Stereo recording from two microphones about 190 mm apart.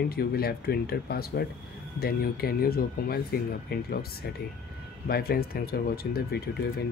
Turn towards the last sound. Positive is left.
turn(degrees=55)  # may be behind; listen again after turning